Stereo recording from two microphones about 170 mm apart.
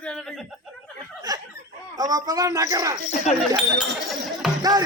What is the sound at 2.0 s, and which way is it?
Speech, 20° right (ahead or behind).